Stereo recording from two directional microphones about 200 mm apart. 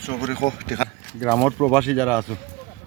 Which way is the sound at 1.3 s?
5° left (ahead or behind).